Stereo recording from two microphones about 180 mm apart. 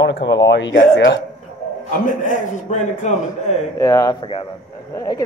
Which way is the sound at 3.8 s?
15° left (ahead or behind).